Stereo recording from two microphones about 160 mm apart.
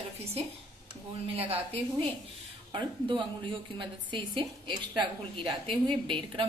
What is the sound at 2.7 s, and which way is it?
A woman's voice, 30° right (ahead or behind).